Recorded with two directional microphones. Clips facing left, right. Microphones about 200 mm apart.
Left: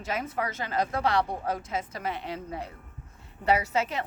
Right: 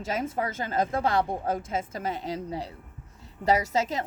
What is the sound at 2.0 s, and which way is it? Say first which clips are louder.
Speech: right 2 dB; 40° right (ahead or behind).